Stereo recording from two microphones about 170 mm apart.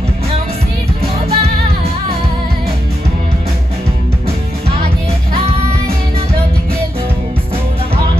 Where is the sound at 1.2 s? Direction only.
35° right (ahead or behind).